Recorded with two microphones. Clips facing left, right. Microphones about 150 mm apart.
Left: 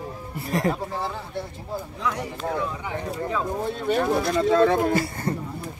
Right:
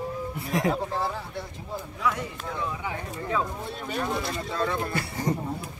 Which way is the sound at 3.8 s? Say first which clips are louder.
Left 7 dB; 75° left (ahead or behind).